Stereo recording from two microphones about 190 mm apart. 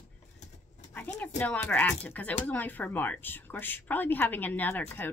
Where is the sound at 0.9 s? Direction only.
5° left (ahead or behind).